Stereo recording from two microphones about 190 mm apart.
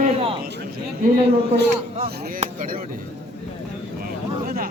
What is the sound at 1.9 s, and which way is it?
Speech, 30° right (ahead or behind).